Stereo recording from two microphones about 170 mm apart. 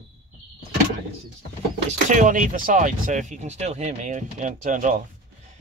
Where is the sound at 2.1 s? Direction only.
50° right (ahead or behind).